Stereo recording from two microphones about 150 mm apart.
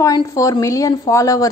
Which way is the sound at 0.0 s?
20° left (ahead or behind).